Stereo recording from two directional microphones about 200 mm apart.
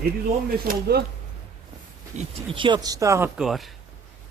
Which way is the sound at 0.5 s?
50° right (ahead or behind).